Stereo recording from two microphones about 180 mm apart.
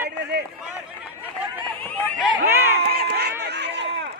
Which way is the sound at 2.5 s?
10° right (ahead or behind).